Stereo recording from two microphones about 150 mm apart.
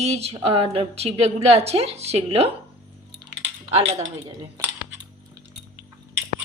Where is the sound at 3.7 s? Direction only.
45° right (ahead or behind).